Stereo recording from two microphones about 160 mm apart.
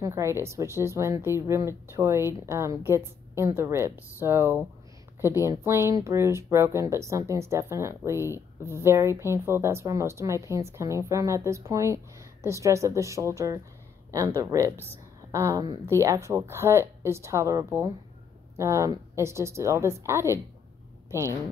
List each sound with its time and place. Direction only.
0.0 s speech: 15° right (ahead or behind)